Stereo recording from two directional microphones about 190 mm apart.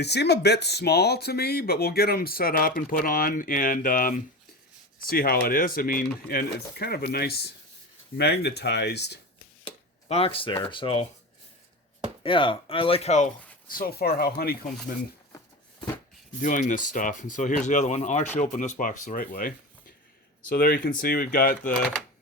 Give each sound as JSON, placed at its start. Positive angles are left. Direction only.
{"t": 0.0, "sound": "speech", "side_deg": 60}
{"t": 9.6, "sound": "speech", "side_deg": 30}
{"t": 12.2, "sound": "speech", "side_deg": 25}
{"t": 16.4, "sound": "speech", "side_deg": 45}